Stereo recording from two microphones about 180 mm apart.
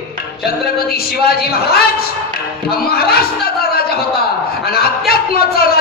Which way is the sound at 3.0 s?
60° left (ahead or behind).